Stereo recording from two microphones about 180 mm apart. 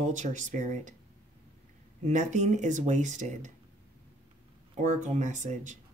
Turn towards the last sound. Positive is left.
turn(degrees=-40)  # may be behind; listen again after turning